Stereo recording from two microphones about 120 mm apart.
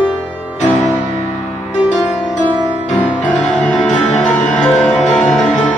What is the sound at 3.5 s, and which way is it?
Music, 5° left (ahead or behind).